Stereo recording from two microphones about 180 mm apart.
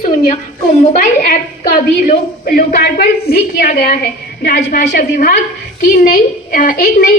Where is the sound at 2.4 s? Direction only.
55° left (ahead or behind).